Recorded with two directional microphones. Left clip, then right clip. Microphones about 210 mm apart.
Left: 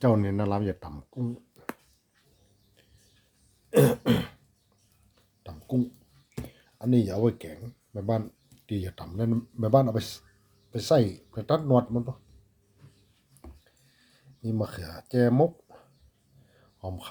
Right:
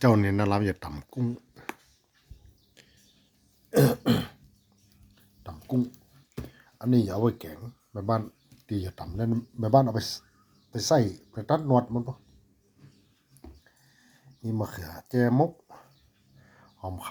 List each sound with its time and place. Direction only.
0.0 s speech: 5° right (ahead or behind)
3.7 s throat clearing: 5° left (ahead or behind)
5.4 s a sound: centre (ahead or behind)
6.9 s speech: centre (ahead or behind)
10.0 s speech: 25° left (ahead or behind)
10.7 s speech: 5° left (ahead or behind)
14.4 s speech: 5° left (ahead or behind)